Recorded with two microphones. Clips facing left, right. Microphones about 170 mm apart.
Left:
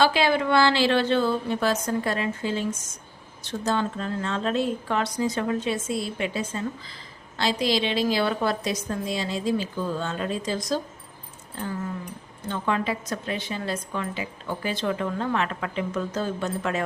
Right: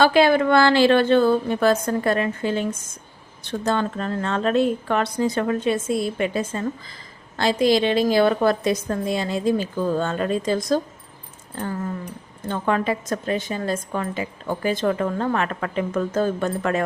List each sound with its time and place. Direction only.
0.0 s a woman's voice: 50° right (ahead or behind)
12.5 s a woman's voice: 50° right (ahead or behind)